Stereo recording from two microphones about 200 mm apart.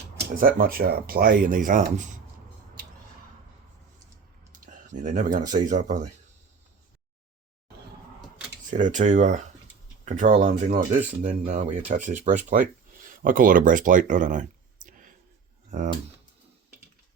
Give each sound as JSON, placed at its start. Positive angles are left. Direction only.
{"t": 0.3, "sound": "speech", "side_deg": -45}
{"t": 4.6, "sound": "a sound", "side_deg": -40}
{"t": 5.5, "sound": "speech", "side_deg": -40}
{"t": 8.8, "sound": "speech", "side_deg": -40}